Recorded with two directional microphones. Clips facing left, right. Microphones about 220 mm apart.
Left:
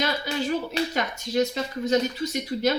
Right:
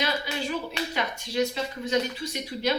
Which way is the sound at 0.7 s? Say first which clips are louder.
Left 4 dB; 40° left (ahead or behind).